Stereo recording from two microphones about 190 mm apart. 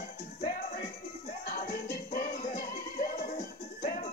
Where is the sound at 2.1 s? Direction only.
45° left (ahead or behind).